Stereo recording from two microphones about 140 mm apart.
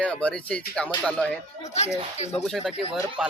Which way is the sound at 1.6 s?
50° left (ahead or behind).